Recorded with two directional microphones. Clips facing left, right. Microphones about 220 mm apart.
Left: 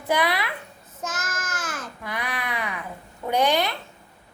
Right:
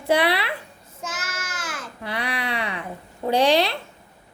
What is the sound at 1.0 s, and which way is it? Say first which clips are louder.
Child singing: left 1 dB; 10° right (ahead or behind).